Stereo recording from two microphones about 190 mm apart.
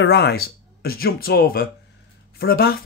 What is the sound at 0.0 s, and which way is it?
Speech, 60° left (ahead or behind).